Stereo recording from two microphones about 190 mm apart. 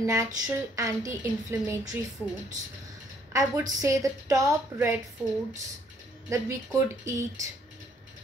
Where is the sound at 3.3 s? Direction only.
15° right (ahead or behind).